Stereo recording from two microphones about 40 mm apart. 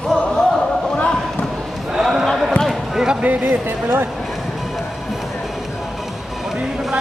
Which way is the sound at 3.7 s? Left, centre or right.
Right.